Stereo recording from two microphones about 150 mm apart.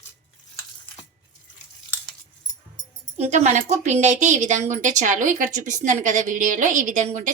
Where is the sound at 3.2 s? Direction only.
50° right (ahead or behind).